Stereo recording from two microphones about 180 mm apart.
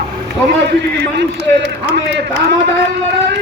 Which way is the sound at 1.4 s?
70° right (ahead or behind).